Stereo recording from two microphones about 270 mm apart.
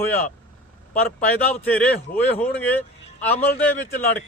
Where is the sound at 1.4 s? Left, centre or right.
Centre.